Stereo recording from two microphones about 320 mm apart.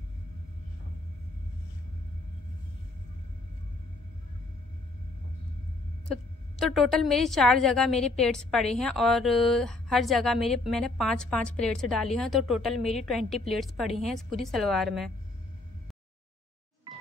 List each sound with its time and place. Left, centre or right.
6.6 s a woman's voice: centre